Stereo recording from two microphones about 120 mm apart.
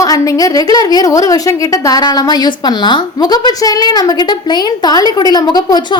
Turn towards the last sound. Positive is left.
turn(degrees=35)  # may be behind; listen again after turning